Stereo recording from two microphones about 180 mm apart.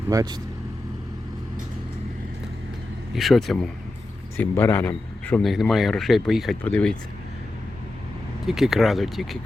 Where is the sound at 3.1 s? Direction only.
Centre (ahead or behind).